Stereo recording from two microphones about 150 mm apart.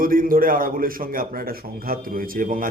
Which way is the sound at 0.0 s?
70° right (ahead or behind).